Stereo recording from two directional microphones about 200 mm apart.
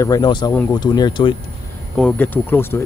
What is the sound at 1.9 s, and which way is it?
Speech, 5° left (ahead or behind).